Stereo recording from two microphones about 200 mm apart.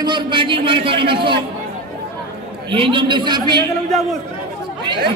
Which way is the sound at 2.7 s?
25° right (ahead or behind).